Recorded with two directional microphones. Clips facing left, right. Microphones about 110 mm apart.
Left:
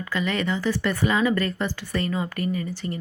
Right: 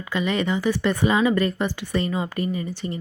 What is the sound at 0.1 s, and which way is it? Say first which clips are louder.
Speech: right 3 dB; 20° right (ahead or behind).